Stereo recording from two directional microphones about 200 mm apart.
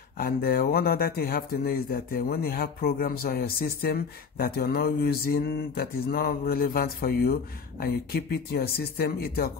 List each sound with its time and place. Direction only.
0.2 s speech: 45° left (ahead or behind)